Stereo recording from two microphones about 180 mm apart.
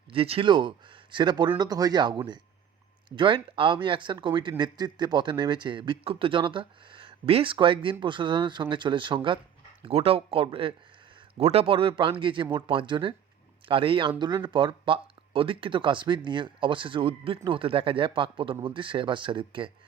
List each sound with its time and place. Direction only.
0.1 s speech: 30° right (ahead or behind)